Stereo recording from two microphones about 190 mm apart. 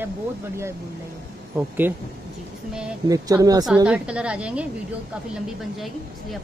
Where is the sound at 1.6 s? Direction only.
10° right (ahead or behind).